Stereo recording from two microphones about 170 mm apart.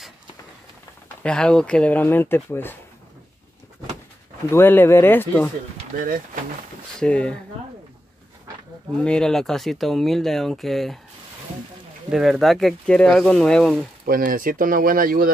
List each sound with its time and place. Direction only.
1.2 s speech: 5° left (ahead or behind)
4.5 s speech: 15° left (ahead or behind)
7.0 s speech: 5° left (ahead or behind)
9.0 s speech: 5° left (ahead or behind)
12.1 s speech: centre (ahead or behind)
14.0 s speech: 55° right (ahead or behind)